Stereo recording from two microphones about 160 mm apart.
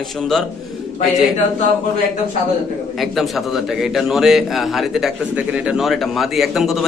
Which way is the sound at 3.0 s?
Centre (ahead or behind).